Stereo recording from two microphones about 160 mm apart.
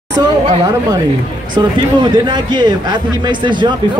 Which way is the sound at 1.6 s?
25° right (ahead or behind).